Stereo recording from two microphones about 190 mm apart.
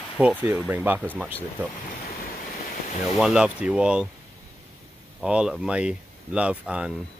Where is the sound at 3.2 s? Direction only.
5° right (ahead or behind).